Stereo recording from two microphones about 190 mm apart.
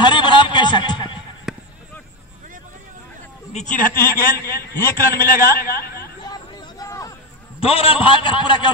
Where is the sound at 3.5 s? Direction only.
40° left (ahead or behind).